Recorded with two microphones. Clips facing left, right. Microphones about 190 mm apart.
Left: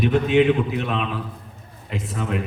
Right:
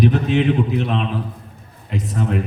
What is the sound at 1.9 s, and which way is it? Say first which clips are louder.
Speech: right 4 dB; 40° right (ahead or behind).